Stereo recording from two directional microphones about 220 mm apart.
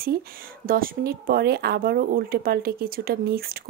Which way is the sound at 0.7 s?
40° right (ahead or behind).